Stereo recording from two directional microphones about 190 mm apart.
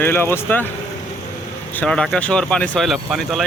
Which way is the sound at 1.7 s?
5° left (ahead or behind).